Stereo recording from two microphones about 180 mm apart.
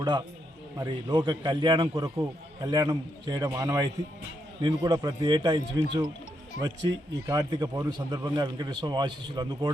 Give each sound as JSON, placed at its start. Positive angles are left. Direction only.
{"t": 0.8, "sound": "speech", "side_deg": -25}